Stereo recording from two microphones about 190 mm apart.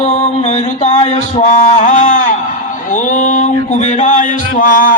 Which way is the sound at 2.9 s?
40° left (ahead or behind).